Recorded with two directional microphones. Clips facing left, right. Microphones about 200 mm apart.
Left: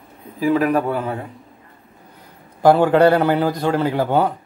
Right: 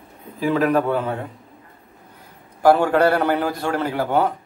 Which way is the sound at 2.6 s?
20° left (ahead or behind).